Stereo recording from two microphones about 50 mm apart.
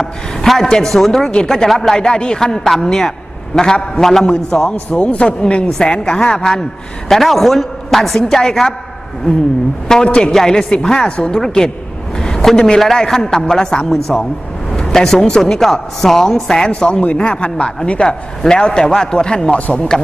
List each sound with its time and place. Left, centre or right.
0.0 s a woman's voice: centre
4.6 s a woman's voice: left
7.1 s a woman's voice: centre
10.0 s speech: centre
10.3 s a woman's voice: centre